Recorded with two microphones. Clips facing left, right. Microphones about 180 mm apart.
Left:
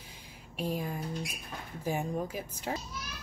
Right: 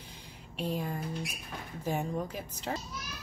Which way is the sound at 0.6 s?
10° left (ahead or behind).